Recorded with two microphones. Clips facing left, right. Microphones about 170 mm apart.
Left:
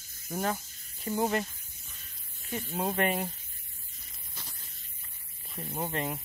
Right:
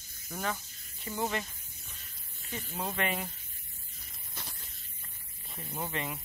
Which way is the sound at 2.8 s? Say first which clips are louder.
Left 5 dB; 45° left (ahead or behind).